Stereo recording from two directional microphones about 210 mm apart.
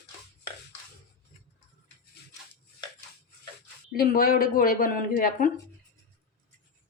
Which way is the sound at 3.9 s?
45° left (ahead or behind).